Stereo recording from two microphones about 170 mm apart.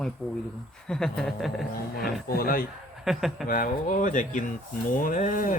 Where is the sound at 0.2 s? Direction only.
Centre (ahead or behind).